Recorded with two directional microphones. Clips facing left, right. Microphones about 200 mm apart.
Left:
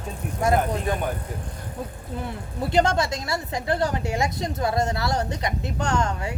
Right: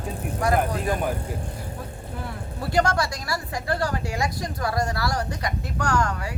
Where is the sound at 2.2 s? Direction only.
20° left (ahead or behind).